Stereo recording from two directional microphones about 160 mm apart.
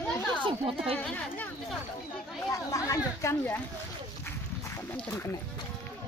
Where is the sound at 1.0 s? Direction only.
10° left (ahead or behind).